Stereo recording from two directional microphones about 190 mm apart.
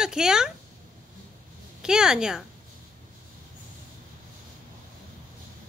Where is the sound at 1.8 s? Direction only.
5° right (ahead or behind).